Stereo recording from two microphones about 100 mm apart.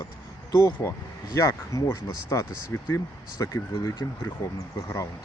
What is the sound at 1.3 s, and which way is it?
Speech, 35° left (ahead or behind).